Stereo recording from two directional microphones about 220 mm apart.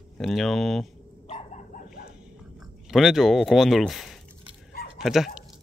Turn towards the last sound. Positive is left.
turn(degrees=0)  # may be behind; listen again after turning